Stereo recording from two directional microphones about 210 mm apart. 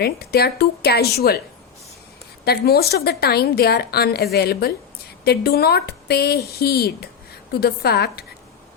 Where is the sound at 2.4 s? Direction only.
50° left (ahead or behind).